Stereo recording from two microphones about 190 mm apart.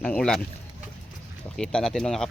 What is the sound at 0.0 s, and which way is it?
Speech, 5° left (ahead or behind).